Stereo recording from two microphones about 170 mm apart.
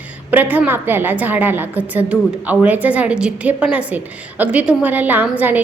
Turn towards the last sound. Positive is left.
turn(degrees=-10)  # may be behind; listen again after turning